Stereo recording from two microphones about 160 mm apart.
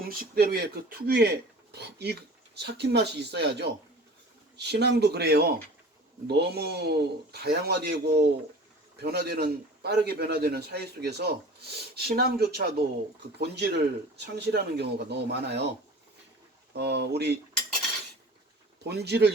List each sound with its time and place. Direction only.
0.1 s speech: 65° right (ahead or behind)
1.7 s a man's voice: 90° right
6.2 s a man's voice: 90° right
16.7 s a man's voice: 90° right
18.8 s a man's voice: 90° right